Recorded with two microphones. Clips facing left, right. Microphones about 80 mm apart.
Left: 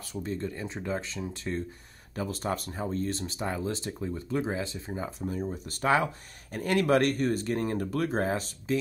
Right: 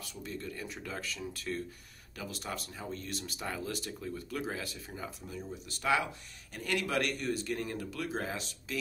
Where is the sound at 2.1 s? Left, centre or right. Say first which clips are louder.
Left 9 dB; left.